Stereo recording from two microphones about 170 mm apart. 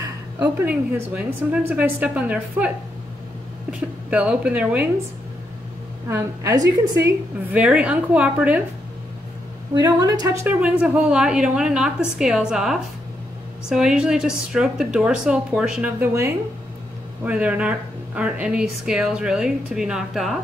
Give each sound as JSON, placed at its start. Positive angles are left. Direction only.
{"t": 0.4, "sound": "a woman's voice", "side_deg": -10}
{"t": 4.1, "sound": "speech", "side_deg": -5}
{"t": 6.0, "sound": "a woman's voice", "side_deg": -15}
{"t": 7.5, "sound": "a woman's voice", "side_deg": -5}
{"t": 9.8, "sound": "speech", "side_deg": -20}
{"t": 10.6, "sound": "speech", "side_deg": -5}